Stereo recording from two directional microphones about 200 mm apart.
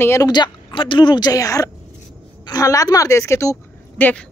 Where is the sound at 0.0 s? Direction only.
15° left (ahead or behind).